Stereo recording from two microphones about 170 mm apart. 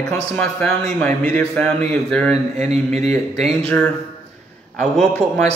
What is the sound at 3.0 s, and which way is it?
Speech, centre (ahead or behind).